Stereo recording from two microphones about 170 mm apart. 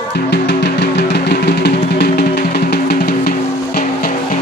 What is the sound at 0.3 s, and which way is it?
Music, 90° left.